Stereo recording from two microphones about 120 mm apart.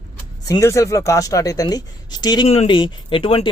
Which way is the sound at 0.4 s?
25° left (ahead or behind).